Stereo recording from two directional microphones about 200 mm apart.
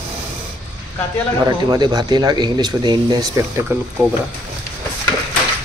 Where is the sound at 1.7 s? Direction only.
20° right (ahead or behind).